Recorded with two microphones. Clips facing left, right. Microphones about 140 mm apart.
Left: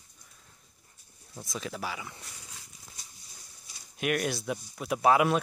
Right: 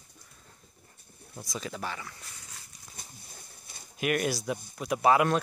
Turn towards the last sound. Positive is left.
turn(degrees=0)  # may be behind; listen again after turning